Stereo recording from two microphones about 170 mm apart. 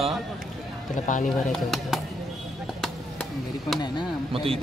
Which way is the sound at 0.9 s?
50° left (ahead or behind).